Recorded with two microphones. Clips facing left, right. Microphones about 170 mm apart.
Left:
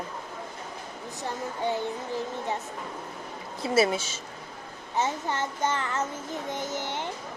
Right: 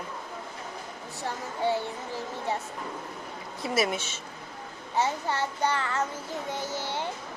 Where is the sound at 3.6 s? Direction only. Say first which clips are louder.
Left 4 dB; 30° left (ahead or behind).